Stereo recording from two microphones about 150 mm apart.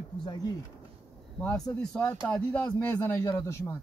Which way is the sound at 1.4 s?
10° left (ahead or behind).